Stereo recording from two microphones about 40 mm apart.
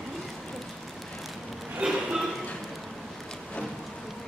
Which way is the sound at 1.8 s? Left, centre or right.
Right.